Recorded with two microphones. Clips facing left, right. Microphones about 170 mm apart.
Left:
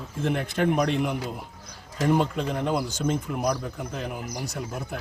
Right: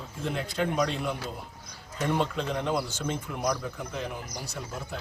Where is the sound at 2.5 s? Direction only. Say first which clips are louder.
Left 3 dB; 45° left (ahead or behind).